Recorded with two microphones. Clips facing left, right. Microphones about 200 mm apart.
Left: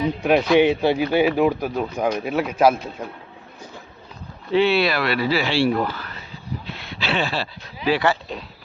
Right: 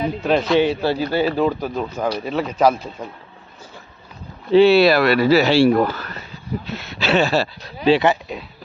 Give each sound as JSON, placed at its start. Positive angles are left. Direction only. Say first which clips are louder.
{"t": 0.2, "sound": "speech", "louder": "left 1 dB", "side_deg": 10}
{"t": 4.5, "sound": "speech", "louder": "right 7 dB", "side_deg": -35}
{"t": 7.9, "sound": "speech", "louder": "right 5 dB", "side_deg": -20}